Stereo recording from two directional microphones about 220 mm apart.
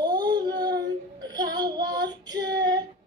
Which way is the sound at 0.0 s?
20° right (ahead or behind).